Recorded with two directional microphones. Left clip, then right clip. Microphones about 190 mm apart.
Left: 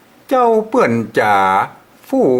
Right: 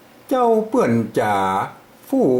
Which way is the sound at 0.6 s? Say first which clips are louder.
Left 4 dB; 5° right (ahead or behind).